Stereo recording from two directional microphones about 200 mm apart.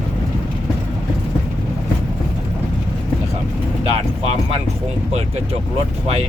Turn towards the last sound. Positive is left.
turn(degrees=-30)  # may be behind; listen again after turning